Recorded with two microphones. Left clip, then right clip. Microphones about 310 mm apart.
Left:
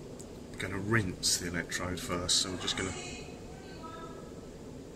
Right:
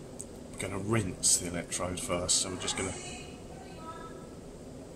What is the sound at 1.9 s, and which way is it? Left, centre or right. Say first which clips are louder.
Speech: even; centre.